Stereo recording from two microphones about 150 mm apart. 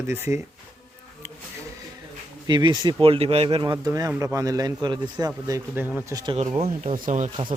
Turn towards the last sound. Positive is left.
turn(degrees=-60)  # may be behind; listen again after turning